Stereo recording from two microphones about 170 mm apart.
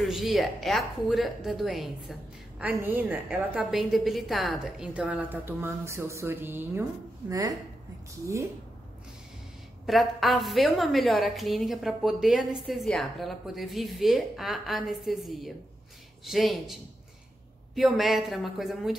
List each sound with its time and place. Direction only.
0.0 s a woman's voice: centre (ahead or behind); by 7.5 s 20° right (ahead or behind)
9.8 s a woman's voice: centre (ahead or behind)
17.7 s a woman's voice: centre (ahead or behind)